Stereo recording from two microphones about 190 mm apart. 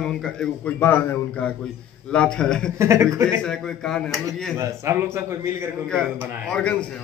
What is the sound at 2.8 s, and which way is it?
Speech, 15° right (ahead or behind).